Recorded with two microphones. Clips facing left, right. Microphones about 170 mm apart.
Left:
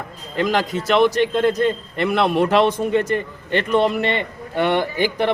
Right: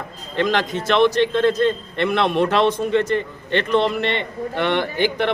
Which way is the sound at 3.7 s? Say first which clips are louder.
Left 2 dB; 10° left (ahead or behind).